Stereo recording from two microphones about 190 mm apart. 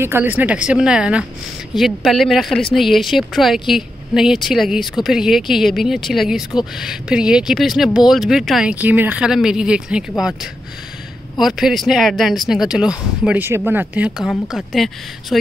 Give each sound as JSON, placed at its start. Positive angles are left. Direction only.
{"t": 0.0, "sound": "speech", "side_deg": -10}